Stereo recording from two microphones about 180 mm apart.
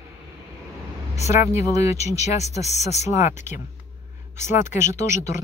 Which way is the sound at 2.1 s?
35° left (ahead or behind).